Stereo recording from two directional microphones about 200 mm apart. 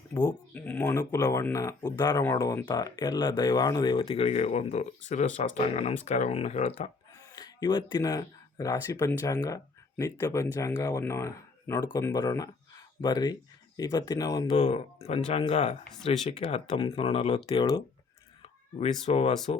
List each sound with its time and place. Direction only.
0.1 s speech: 20° left (ahead or behind)
0.5 s speech: 10° left (ahead or behind); by 6.9 s 30° left (ahead or behind)
7.3 s speech: 20° left (ahead or behind)
14.5 s speech: 30° left (ahead or behind)
19.0 s speech: 30° left (ahead or behind)